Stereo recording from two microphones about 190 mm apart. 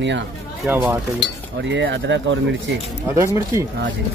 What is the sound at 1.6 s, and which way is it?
Speech, 70° right (ahead or behind).